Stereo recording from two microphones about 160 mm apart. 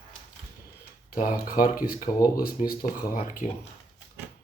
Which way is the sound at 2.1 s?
25° left (ahead or behind).